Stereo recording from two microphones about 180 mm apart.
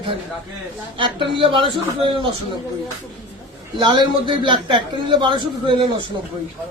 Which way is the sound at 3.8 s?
25° right (ahead or behind).